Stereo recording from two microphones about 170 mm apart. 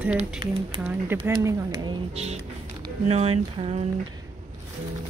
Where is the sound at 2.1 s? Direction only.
40° right (ahead or behind).